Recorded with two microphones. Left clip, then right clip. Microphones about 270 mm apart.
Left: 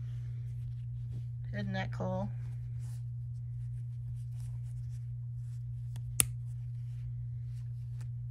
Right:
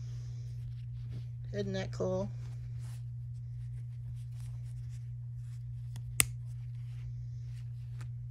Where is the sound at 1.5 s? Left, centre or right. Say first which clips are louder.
Right 2 dB; centre.